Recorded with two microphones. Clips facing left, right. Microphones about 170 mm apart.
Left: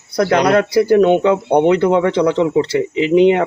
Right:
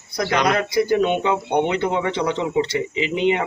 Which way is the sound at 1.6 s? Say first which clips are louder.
Left 9 dB; 55° left (ahead or behind).